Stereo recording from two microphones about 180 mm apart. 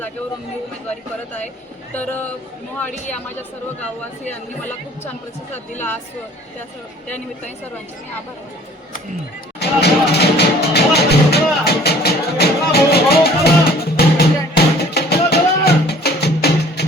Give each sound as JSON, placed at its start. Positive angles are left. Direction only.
{"t": 1.9, "sound": "a woman's voice", "side_deg": 10}
{"t": 5.7, "sound": "a woman's voice", "side_deg": 10}
{"t": 9.6, "sound": "music", "side_deg": 65}